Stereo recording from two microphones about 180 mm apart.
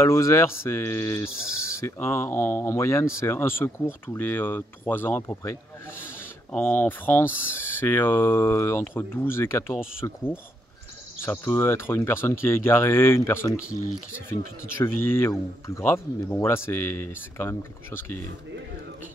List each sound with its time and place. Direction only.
0.0 s speech: 15° left (ahead or behind)